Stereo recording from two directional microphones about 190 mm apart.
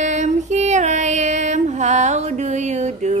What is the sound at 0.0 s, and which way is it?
Female singing, 40° right (ahead or behind).